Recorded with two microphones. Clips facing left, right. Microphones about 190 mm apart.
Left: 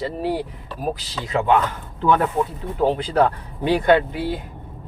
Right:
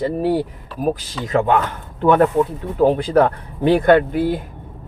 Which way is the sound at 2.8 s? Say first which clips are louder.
Right 4 dB; 50° right (ahead or behind).